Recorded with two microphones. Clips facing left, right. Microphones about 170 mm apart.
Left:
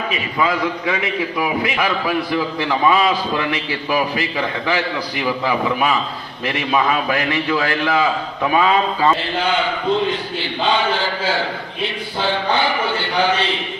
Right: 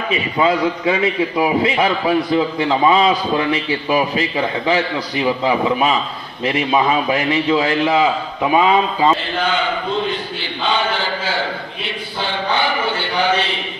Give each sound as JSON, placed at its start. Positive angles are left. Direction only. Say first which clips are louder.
{"t": 0.1, "sound": "a man's voice", "louder": "right 5 dB", "side_deg": -25}